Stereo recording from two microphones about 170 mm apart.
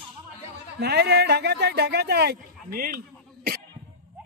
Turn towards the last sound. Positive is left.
turn(degrees=-60)  # may be behind; listen again after turning